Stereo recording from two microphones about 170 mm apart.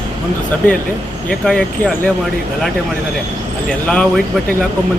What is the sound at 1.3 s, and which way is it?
Speech, 5° left (ahead or behind).